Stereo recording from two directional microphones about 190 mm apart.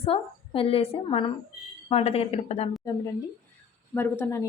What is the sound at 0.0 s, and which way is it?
A woman's voice, 30° left (ahead or behind).